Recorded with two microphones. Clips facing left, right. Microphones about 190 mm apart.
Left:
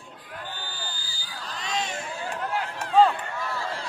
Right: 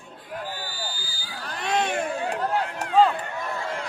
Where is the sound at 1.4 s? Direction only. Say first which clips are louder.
Right 6 dB; 60° right (ahead or behind).